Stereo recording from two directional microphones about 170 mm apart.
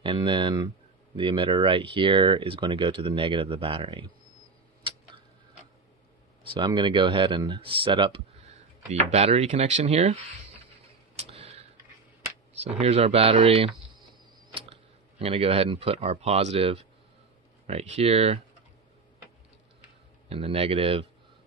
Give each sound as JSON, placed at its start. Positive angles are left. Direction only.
{"t": 0.0, "sound": "speech", "side_deg": -30}
{"t": 6.5, "sound": "speech", "side_deg": -25}
{"t": 11.1, "sound": "tick-tock", "side_deg": -35}
{"t": 12.5, "sound": "speech", "side_deg": -40}
{"t": 20.2, "sound": "speech", "side_deg": -35}